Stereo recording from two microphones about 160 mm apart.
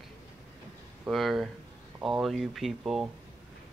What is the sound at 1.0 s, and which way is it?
Speech, centre (ahead or behind).